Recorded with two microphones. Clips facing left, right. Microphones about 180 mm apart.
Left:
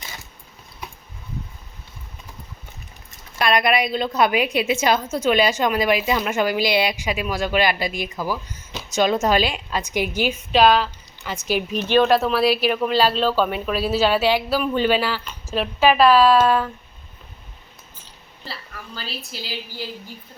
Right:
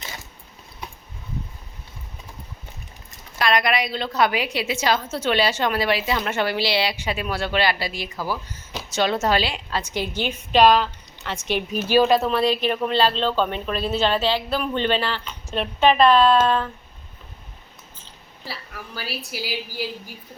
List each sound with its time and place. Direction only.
3.3 s a woman's voice: 20° left (ahead or behind); by 11.8 s 5° left (ahead or behind)
11.8 s speech: 5° right (ahead or behind)
18.9 s a woman's voice: 10° right (ahead or behind)